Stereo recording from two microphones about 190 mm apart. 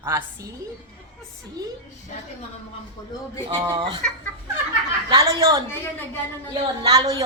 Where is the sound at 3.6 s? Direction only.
20° right (ahead or behind).